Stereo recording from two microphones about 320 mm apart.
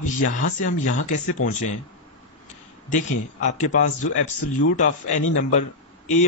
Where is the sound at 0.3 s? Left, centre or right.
Left.